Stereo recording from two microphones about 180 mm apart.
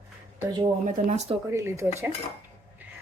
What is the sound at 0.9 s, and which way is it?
Speech, 45° right (ahead or behind).